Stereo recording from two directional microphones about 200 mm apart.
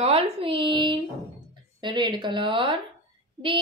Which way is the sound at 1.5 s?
20° right (ahead or behind).